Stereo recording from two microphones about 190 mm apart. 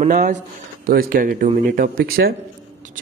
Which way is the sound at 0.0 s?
45° right (ahead or behind).